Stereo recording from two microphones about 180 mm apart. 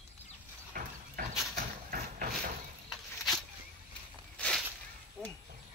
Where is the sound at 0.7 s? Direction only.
55° right (ahead or behind).